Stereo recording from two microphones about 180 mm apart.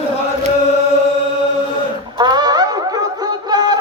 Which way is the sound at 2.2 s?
25° right (ahead or behind).